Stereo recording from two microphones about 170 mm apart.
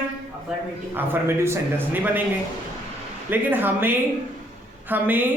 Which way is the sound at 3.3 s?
10° right (ahead or behind).